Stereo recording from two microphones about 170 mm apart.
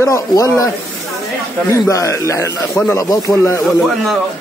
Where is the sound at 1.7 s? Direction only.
20° left (ahead or behind).